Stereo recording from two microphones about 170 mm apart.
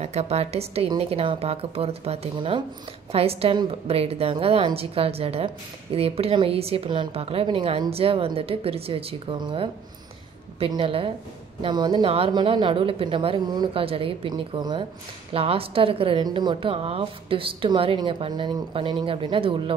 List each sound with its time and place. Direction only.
0.0 s a woman's voice: 40° right (ahead or behind)